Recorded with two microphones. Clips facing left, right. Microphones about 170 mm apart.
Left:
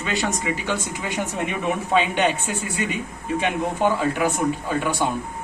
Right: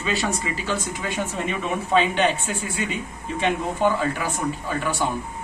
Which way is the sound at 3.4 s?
15° left (ahead or behind).